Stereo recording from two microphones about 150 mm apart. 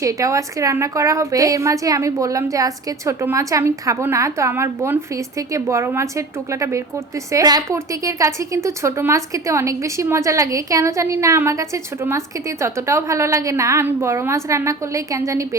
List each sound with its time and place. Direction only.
0.0 s a woman's voice: 20° right (ahead or behind)